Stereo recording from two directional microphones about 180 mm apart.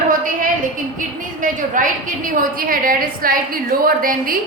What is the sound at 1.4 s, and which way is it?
A woman's voice, 45° right (ahead or behind).